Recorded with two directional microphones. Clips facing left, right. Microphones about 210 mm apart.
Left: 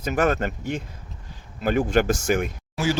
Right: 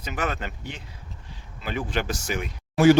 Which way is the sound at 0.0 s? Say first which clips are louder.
Left 8 dB; 45° left (ahead or behind).